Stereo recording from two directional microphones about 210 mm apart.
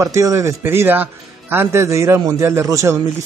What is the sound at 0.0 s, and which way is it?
Speech, 15° right (ahead or behind).